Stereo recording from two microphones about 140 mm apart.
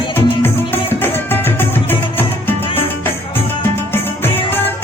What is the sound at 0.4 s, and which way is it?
Music, 15° left (ahead or behind).